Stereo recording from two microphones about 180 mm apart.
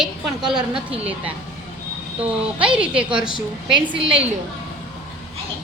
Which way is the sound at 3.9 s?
30° right (ahead or behind).